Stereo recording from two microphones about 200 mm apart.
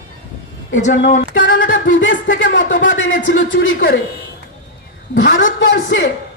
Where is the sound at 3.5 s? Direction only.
60° left (ahead or behind).